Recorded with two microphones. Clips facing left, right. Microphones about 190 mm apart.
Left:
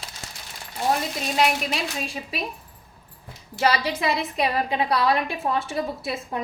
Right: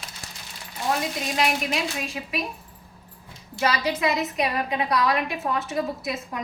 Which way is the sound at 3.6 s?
30° left (ahead or behind).